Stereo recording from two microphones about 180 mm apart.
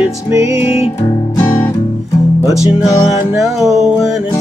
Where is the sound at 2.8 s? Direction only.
20° left (ahead or behind).